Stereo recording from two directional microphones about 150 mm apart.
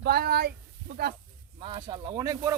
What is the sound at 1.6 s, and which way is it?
Speech, 30° right (ahead or behind).